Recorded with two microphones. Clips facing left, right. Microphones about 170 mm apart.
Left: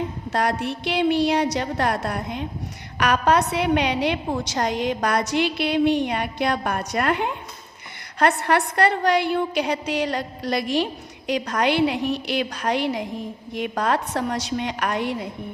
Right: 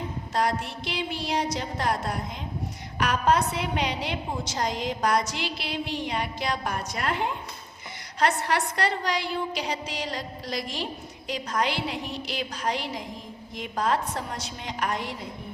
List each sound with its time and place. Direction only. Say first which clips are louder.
0.3 s a woman's voice: left 3 dB; 65° left (ahead or behind)